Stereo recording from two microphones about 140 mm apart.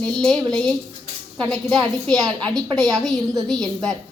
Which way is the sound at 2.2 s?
25° right (ahead or behind).